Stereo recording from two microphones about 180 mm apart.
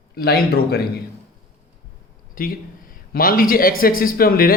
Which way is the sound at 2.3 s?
50° left (ahead or behind).